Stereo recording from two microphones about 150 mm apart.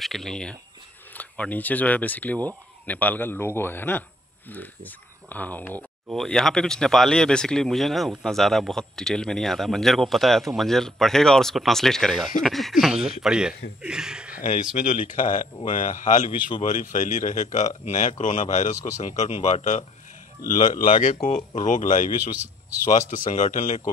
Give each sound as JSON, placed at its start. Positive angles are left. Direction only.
{"t": 0.0, "sound": "speech", "side_deg": 0}
{"t": 14.4, "sound": "speech", "side_deg": 60}